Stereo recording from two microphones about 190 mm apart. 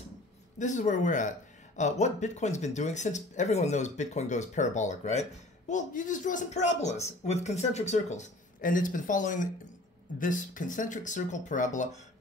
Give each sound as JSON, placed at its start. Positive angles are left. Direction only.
{"t": 0.6, "sound": "speech", "side_deg": 40}